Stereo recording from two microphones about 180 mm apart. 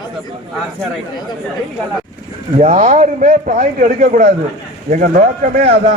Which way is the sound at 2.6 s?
40° right (ahead or behind).